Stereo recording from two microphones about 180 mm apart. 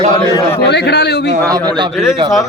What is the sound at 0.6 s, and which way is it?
Speech, 70° left (ahead or behind).